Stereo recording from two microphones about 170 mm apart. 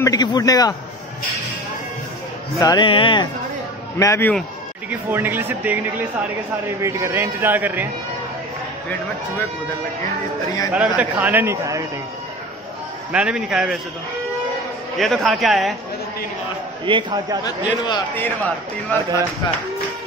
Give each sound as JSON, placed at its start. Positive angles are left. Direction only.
{"t": 0.0, "sound": "a man's voice", "side_deg": 25}
{"t": 2.6, "sound": "a man's voice", "side_deg": 25}
{"t": 4.0, "sound": "speech", "side_deg": 15}
{"t": 4.8, "sound": "speech", "side_deg": -10}
{"t": 6.8, "sound": "speech", "side_deg": -15}
{"t": 10.7, "sound": "speech", "side_deg": -10}
{"t": 13.1, "sound": "a man's voice", "side_deg": -5}
{"t": 15.0, "sound": "a man's voice", "side_deg": 0}
{"t": 16.8, "sound": "a man's voice", "side_deg": -30}
{"t": 17.5, "sound": "a man's voice", "side_deg": 25}
{"t": 18.1, "sound": "speech", "side_deg": 10}